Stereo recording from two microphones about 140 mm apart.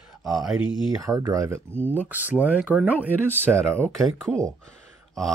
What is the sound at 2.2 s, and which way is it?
Speech, 10° right (ahead or behind).